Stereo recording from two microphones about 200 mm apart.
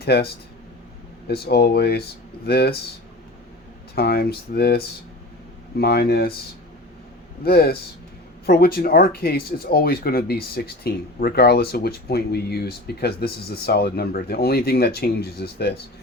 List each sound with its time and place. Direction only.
0.0 s speech: 55° left (ahead or behind)
1.3 s speech: 50° left (ahead or behind)
3.9 s speech: 50° left (ahead or behind)
7.4 s speech: 50° left (ahead or behind)